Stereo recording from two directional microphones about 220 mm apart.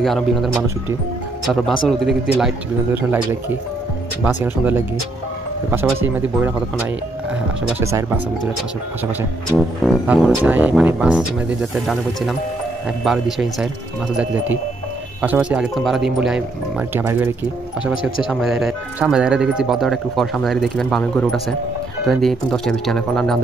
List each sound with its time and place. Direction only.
0.0 s speech: centre (ahead or behind)
1.9 s speech: centre (ahead or behind)
9.8 s speech: centre (ahead or behind)
18.3 s speech: centre (ahead or behind)